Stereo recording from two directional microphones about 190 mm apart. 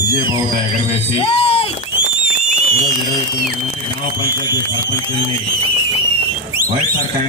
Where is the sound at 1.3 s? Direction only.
30° left (ahead or behind).